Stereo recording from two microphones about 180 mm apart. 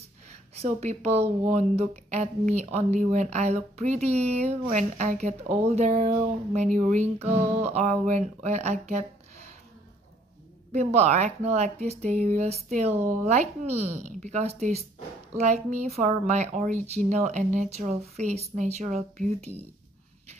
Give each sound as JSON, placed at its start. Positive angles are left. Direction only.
{"t": 0.6, "sound": "speech", "side_deg": -35}
{"t": 10.7, "sound": "speech", "side_deg": -40}